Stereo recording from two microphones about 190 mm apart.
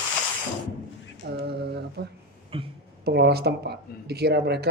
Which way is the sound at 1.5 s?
55° right (ahead or behind).